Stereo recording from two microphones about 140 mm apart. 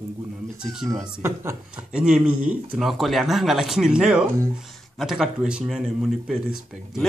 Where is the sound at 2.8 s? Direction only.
Centre (ahead or behind).